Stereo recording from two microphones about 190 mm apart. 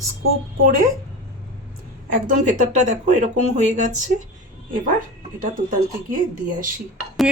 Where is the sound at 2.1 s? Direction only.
45° right (ahead or behind).